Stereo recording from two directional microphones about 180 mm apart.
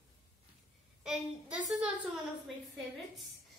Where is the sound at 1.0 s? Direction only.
5° right (ahead or behind).